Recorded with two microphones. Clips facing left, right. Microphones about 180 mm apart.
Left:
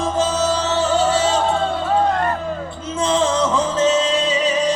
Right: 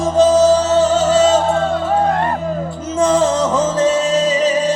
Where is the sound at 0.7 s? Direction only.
40° right (ahead or behind).